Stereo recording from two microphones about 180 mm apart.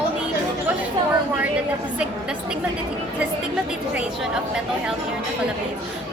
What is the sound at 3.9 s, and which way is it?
A woman's voice, 5° right (ahead or behind).